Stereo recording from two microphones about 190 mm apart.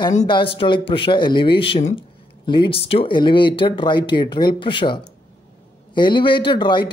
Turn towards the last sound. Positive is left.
turn(degrees=25)  # may be behind; listen again after turning